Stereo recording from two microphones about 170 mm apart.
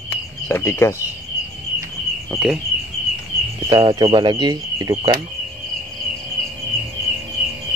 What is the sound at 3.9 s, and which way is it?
Speech, 25° right (ahead or behind).